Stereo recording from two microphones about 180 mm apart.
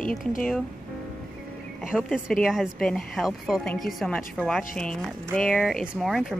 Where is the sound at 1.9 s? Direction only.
Centre (ahead or behind).